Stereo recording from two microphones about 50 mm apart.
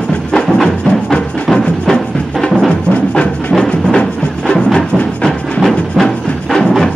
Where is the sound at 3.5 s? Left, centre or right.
Centre.